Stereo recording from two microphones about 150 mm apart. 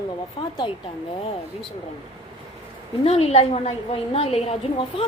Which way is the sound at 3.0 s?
40° left (ahead or behind).